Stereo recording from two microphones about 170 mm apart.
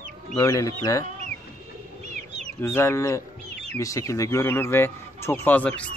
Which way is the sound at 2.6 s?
15° left (ahead or behind).